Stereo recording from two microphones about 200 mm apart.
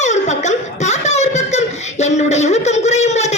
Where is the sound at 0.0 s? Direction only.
35° left (ahead or behind).